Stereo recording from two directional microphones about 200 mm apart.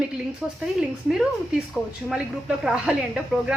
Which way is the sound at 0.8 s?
5° right (ahead or behind).